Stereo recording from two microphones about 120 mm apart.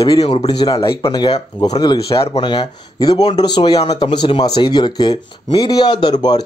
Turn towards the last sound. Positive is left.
turn(degrees=35)  # may be behind; listen again after turning